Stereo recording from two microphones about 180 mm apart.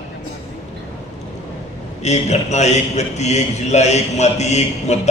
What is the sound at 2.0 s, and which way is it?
A man's voice, 40° left (ahead or behind).